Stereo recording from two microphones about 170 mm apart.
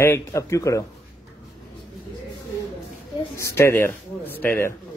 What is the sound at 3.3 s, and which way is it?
A man's voice, 15° left (ahead or behind).